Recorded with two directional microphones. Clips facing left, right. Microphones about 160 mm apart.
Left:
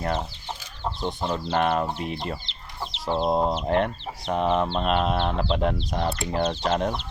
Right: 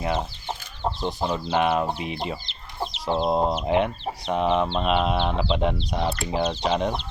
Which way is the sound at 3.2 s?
Centre (ahead or behind).